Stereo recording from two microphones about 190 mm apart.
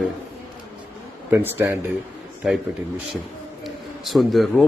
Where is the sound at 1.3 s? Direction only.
10° right (ahead or behind).